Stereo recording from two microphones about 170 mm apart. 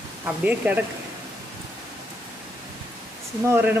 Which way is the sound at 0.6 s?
10° right (ahead or behind).